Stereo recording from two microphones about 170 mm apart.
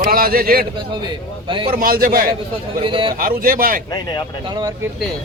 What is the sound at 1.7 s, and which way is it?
Speech, 60° right (ahead or behind).